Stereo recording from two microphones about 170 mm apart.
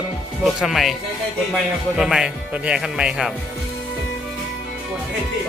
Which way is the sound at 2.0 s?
5° right (ahead or behind).